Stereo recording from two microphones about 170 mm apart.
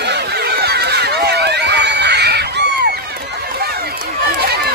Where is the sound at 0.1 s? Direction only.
70° right (ahead or behind).